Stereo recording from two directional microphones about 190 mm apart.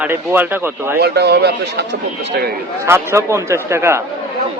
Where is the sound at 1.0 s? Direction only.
60° right (ahead or behind).